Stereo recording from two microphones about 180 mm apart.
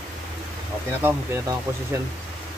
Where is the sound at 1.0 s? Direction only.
15° right (ahead or behind).